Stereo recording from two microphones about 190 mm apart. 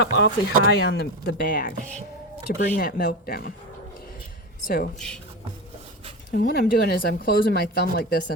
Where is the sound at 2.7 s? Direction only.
50° left (ahead or behind).